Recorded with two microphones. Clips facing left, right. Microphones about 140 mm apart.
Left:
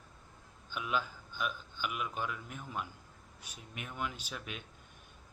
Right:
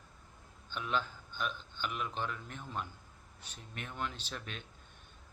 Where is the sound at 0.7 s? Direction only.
10° left (ahead or behind).